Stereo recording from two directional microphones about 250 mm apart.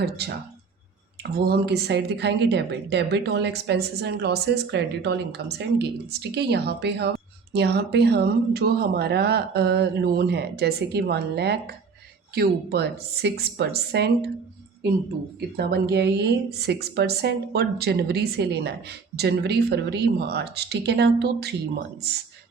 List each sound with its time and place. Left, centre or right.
0.0 s speech: right
15.4 s speech: right